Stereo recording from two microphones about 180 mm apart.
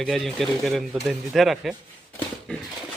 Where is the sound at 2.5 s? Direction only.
5° left (ahead or behind).